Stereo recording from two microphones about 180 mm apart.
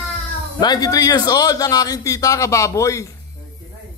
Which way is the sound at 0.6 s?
20° left (ahead or behind).